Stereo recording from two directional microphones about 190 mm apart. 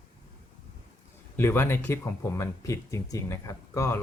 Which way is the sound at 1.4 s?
15° left (ahead or behind).